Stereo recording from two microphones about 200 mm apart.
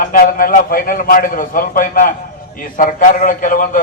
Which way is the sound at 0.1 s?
45° left (ahead or behind).